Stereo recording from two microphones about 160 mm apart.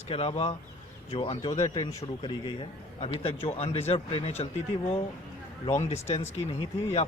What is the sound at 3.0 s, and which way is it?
Speech, 35° left (ahead or behind).